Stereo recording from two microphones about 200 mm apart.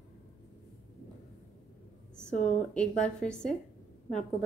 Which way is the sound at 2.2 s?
40° left (ahead or behind).